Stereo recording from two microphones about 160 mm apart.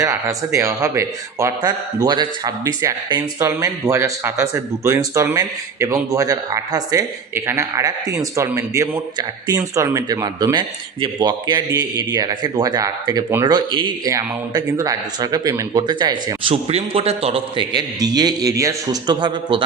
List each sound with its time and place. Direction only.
0.0 s speech: 20° right (ahead or behind)